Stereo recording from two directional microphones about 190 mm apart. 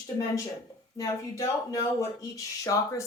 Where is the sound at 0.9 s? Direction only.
15° left (ahead or behind).